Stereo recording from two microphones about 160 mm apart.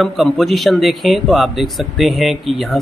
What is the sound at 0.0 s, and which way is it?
Speech, centre (ahead or behind).